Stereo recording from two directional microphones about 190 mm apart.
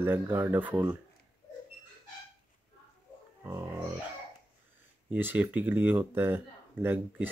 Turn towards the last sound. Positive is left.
turn(degrees=-10)  # may be behind; listen again after turning